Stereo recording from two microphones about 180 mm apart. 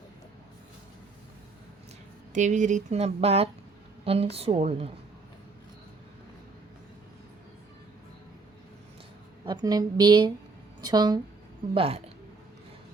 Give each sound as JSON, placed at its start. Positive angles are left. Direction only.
{"t": 2.3, "sound": "speech", "side_deg": -40}
{"t": 9.5, "sound": "a woman's voice", "side_deg": -20}
{"t": 11.7, "sound": "speech", "side_deg": -30}